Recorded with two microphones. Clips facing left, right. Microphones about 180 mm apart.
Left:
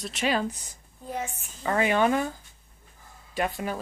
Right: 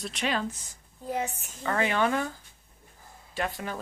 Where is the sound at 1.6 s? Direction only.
15° left (ahead or behind).